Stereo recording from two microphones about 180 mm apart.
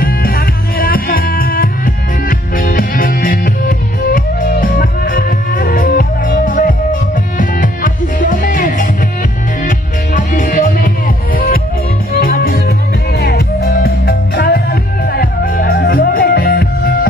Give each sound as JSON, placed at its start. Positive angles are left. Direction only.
{"t": 0.0, "sound": "music", "side_deg": 55}